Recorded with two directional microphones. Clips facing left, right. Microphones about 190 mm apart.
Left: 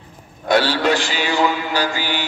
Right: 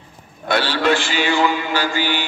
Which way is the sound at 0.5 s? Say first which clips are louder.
Left 2 dB; 40° left (ahead or behind).